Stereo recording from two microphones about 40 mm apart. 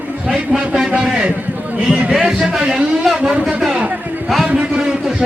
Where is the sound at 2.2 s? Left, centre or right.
Centre.